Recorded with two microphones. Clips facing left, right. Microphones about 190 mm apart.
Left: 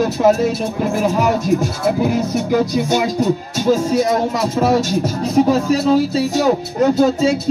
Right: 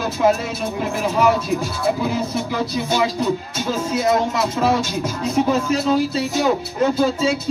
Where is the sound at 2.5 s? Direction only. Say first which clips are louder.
Left 6 dB; 45° left (ahead or behind).